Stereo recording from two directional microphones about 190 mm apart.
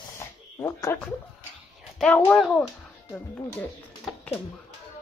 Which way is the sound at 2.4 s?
5° left (ahead or behind).